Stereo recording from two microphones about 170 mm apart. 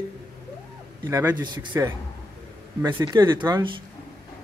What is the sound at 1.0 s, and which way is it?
Speech, 20° right (ahead or behind).